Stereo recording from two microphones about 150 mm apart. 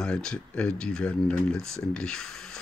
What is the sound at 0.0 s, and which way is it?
Speech, 5° left (ahead or behind).